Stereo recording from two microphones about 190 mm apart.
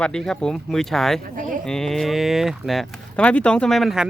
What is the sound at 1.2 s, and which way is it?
Speech, 45° right (ahead or behind).